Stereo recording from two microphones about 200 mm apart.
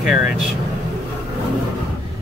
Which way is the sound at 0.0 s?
5° right (ahead or behind).